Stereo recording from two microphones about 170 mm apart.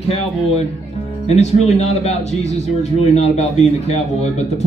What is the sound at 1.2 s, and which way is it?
A man's voice, 40° left (ahead or behind).